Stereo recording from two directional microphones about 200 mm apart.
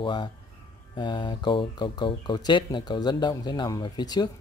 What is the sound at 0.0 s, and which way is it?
Speech, 25° left (ahead or behind).